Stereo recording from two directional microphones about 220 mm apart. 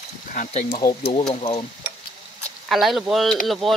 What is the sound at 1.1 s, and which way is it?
Speech, 25° left (ahead or behind).